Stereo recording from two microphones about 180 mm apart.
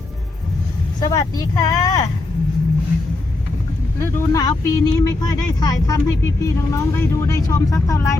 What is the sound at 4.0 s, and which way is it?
Speech, 20° left (ahead or behind).